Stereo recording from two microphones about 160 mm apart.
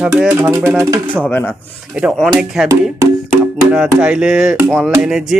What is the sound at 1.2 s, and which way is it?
Speech, 10° left (ahead or behind).